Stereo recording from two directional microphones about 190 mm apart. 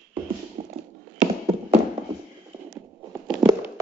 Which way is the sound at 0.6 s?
30° right (ahead or behind).